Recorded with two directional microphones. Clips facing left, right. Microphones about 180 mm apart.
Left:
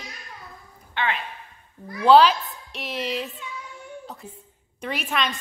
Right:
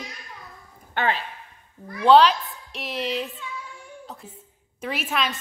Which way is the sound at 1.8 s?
5° left (ahead or behind).